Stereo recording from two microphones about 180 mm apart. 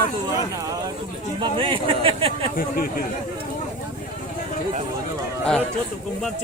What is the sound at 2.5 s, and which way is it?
Speech, 55° left (ahead or behind).